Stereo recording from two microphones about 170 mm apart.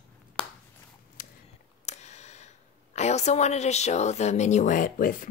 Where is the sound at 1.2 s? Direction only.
55° left (ahead or behind).